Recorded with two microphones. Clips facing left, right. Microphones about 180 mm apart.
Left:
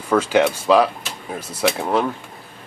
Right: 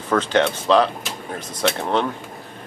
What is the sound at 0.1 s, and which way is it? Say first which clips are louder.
Speech: left 2 dB; 10° left (ahead or behind).